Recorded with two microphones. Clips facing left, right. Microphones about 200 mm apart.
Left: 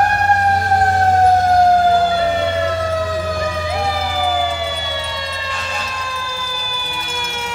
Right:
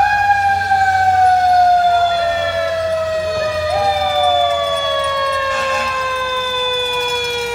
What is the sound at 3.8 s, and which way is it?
Emergency vehicle, 40° right (ahead or behind).